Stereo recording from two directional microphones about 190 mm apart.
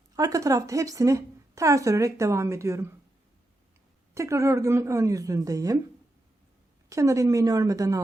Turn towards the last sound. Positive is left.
turn(degrees=-20)  # may be behind; listen again after turning